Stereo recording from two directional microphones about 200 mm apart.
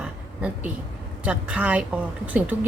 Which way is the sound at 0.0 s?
5° right (ahead or behind).